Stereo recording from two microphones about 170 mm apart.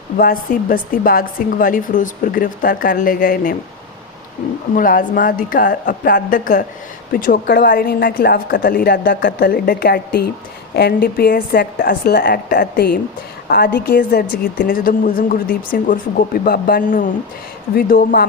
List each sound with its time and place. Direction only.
0.2 s speech: 55° left (ahead or behind)
4.7 s a woman's voice: 50° left (ahead or behind)